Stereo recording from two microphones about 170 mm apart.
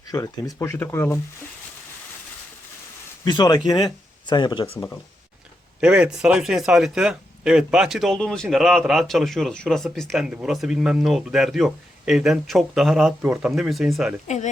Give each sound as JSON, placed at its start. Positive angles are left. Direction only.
{"t": 0.0, "sound": "speech", "side_deg": 20}
{"t": 3.2, "sound": "speech", "side_deg": 25}
{"t": 5.8, "sound": "speech", "side_deg": -5}
{"t": 14.3, "sound": "speech", "side_deg": 45}